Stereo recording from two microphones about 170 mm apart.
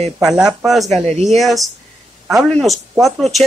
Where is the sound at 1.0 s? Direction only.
40° right (ahead or behind).